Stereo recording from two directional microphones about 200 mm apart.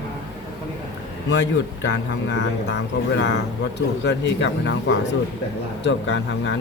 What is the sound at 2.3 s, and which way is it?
Speech, 60° left (ahead or behind).